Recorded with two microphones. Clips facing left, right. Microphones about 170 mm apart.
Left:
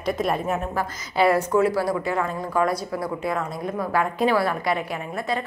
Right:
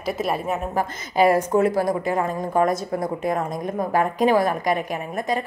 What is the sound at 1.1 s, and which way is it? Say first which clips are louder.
A woman's voice: right 2 dB; 40° right (ahead or behind).